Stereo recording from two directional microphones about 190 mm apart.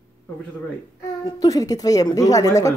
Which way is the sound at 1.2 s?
20° left (ahead or behind).